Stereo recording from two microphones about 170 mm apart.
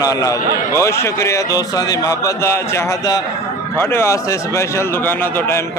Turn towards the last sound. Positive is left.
turn(degrees=15)  # may be behind; listen again after turning